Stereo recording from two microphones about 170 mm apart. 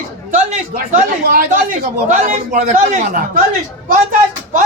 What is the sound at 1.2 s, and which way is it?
A man's voice, 55° right (ahead or behind).